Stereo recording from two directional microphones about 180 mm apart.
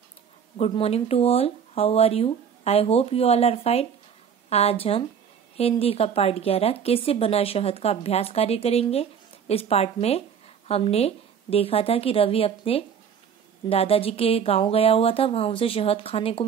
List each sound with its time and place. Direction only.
0.6 s a woman's voice: 35° left (ahead or behind)